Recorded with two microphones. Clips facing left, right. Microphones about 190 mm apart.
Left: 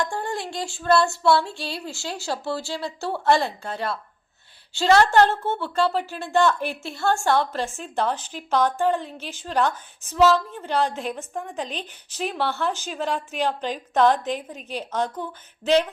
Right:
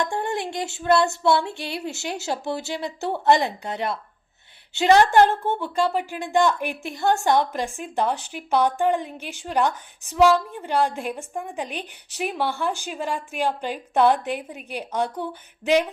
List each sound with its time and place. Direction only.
0.0 s music: 20° right (ahead or behind)
4.7 s a woman's voice: 20° right (ahead or behind)